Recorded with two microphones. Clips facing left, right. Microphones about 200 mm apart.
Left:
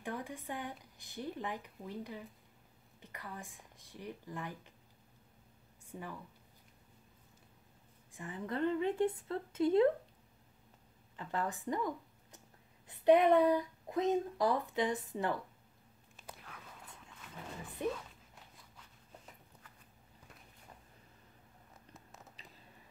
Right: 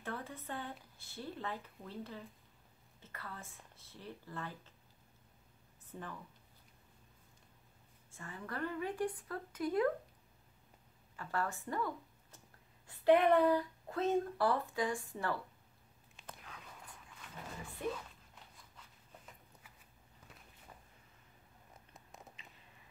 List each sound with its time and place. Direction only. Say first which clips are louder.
0.0 s speech: left 2 dB; 15° left (ahead or behind)
5.9 s a woman's voice: left 2 dB; 10° left (ahead or behind)
8.1 s speech: left 5 dB; 15° left (ahead or behind)
11.1 s speech: left 1 dB; 20° left (ahead or behind)
16.3 s biting: left 1 dB; 5° left (ahead or behind)
17.8 s speech: left 3 dB; 20° left (ahead or behind)
22.4 s whispering: left 2 dB; 35° left (ahead or behind)